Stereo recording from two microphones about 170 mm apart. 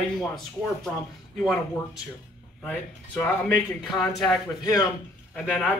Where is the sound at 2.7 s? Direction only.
10° left (ahead or behind).